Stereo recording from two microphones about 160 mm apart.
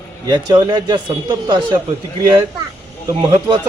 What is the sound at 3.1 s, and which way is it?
Speech, 25° right (ahead or behind).